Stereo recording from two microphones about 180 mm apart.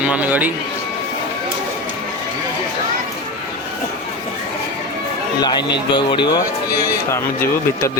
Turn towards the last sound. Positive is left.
turn(degrees=15)  # may be behind; listen again after turning